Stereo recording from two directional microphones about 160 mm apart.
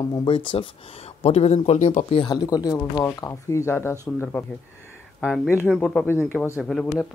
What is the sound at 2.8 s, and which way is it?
Speech, 10° left (ahead or behind).